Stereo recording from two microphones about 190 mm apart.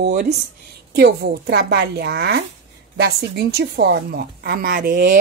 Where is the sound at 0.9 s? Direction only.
55° right (ahead or behind).